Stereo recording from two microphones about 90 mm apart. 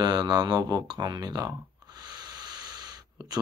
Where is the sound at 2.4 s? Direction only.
50° right (ahead or behind).